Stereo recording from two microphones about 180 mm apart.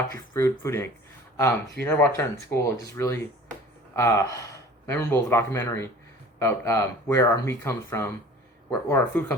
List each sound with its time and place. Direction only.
0.3 s speech: 15° left (ahead or behind)